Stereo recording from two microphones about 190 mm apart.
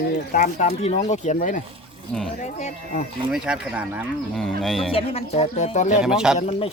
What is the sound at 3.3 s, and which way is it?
Speech, 5° right (ahead or behind).